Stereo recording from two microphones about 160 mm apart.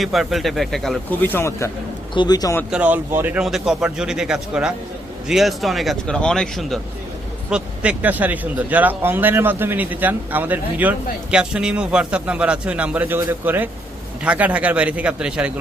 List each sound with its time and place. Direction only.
0.0 s speech: centre (ahead or behind)
1.3 s a man's voice: 15° left (ahead or behind)
2.6 s a man's voice: 10° right (ahead or behind)